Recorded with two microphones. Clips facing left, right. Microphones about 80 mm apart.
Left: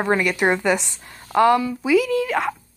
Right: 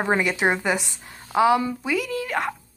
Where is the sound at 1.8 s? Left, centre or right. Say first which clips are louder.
Left 7 dB; centre.